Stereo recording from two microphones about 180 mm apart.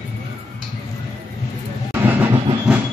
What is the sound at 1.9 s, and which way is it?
Train, 10° right (ahead or behind).